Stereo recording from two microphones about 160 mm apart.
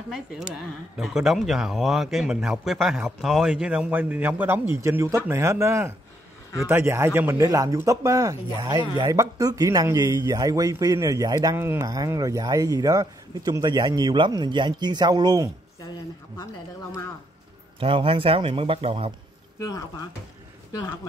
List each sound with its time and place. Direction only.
0.1 s a man's voice: centre (ahead or behind); by 15.5 s 25° right (ahead or behind)
17.7 s speech: 35° right (ahead or behind)